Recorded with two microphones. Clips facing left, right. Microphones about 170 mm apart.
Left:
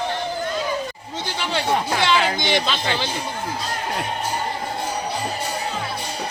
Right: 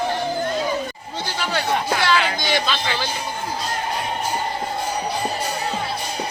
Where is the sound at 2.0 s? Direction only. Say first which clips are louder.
Left 1 dB; 20° left (ahead or behind).